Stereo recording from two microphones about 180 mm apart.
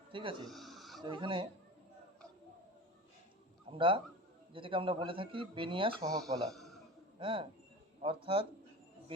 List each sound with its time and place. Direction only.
0.1 s speech: 25° right (ahead or behind)
0.4 s a sound: centre (ahead or behind)
1.0 s speech: 25° right (ahead or behind)
3.7 s speech: 30° right (ahead or behind)
6.5 s a sound: centre (ahead or behind)
7.2 s a man's voice: 30° right (ahead or behind)